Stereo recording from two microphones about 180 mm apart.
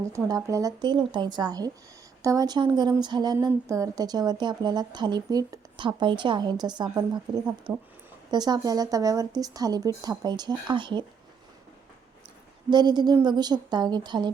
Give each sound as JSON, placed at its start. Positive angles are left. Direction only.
{"t": 0.0, "sound": "speech", "side_deg": -20}
{"t": 12.7, "sound": "speech", "side_deg": -25}